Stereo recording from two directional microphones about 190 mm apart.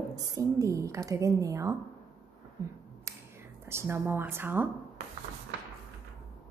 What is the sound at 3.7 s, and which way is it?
A woman's voice, 15° right (ahead or behind).